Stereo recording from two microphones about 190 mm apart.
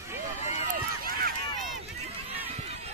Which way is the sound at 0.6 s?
50° right (ahead or behind).